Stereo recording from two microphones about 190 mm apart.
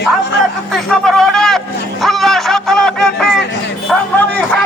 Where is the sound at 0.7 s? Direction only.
Centre (ahead or behind).